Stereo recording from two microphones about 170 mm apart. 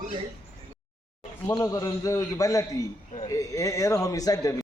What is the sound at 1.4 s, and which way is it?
A man's voice, 20° left (ahead or behind).